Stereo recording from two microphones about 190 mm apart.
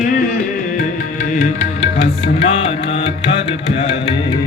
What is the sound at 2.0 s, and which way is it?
Music, 35° left (ahead or behind).